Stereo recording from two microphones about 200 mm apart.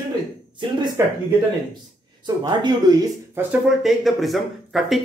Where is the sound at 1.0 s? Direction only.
15° right (ahead or behind).